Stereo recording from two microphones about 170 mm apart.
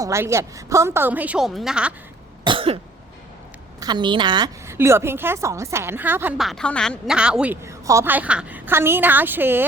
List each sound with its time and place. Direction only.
0.0 s a woman's voice: 15° right (ahead or behind)
2.4 s cough: 30° right (ahead or behind)
3.8 s a woman's voice: 25° right (ahead or behind)